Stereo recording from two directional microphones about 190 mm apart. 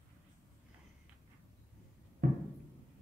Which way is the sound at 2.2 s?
45° right (ahead or behind).